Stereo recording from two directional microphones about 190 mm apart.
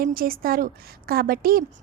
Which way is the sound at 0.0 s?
50° right (ahead or behind).